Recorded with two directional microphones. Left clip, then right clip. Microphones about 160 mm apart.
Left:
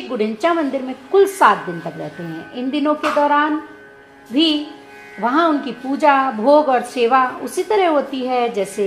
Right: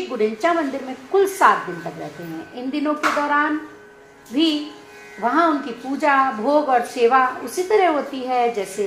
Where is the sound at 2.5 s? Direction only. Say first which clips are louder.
Left 5 dB; 45° left (ahead or behind).